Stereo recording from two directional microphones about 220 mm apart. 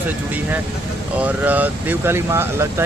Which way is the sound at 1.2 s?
10° right (ahead or behind).